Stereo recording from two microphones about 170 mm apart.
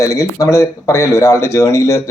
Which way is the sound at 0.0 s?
20° left (ahead or behind).